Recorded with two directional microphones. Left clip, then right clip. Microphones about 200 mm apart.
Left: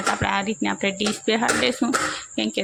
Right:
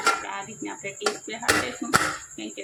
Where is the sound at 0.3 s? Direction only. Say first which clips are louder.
Left 10 dB; 50° left (ahead or behind).